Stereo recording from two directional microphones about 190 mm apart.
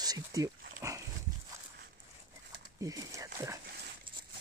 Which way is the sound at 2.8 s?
20° right (ahead or behind).